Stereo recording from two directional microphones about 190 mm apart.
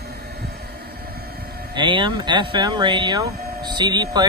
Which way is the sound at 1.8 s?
25° right (ahead or behind).